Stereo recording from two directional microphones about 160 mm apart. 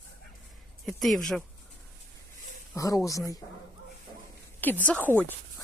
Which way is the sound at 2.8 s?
20° left (ahead or behind).